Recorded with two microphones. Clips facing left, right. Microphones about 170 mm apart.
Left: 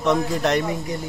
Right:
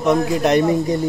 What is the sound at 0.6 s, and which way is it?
Speech, 35° right (ahead or behind).